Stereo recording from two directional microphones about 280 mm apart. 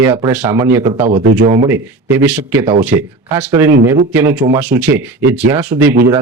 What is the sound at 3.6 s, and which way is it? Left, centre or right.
Speech, centre.